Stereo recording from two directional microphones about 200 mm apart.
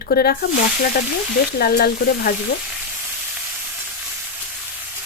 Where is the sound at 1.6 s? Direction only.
50° left (ahead or behind).